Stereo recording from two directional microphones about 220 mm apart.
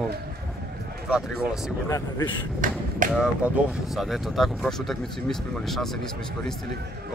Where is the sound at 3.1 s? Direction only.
Centre (ahead or behind).